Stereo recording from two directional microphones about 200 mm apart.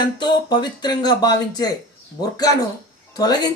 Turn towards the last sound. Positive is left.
turn(degrees=20)  # may be behind; listen again after turning